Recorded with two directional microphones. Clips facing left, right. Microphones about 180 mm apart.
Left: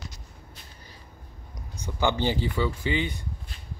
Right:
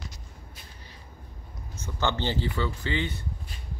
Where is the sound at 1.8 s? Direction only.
10° left (ahead or behind).